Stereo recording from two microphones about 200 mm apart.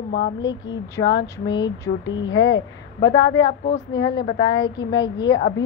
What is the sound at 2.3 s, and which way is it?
Speech, 65° left (ahead or behind).